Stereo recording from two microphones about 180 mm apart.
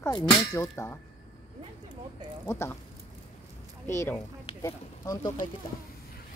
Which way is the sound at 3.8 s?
15° left (ahead or behind).